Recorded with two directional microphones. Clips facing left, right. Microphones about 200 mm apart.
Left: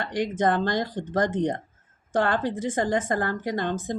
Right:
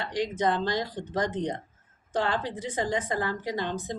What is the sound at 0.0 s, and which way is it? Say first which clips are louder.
A woman's voice: left 3 dB; 50° left (ahead or behind).